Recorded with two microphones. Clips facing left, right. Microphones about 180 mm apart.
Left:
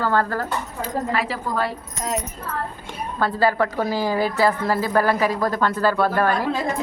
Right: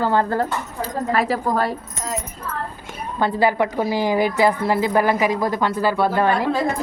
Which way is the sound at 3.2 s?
15° right (ahead or behind).